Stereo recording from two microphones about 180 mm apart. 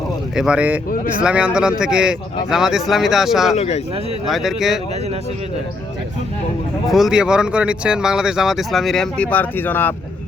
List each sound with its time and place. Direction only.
0.3 s speech: 5° right (ahead or behind)
3.5 s speech: 40° left (ahead or behind)
4.3 s speech: centre (ahead or behind)
6.8 s speech: centre (ahead or behind)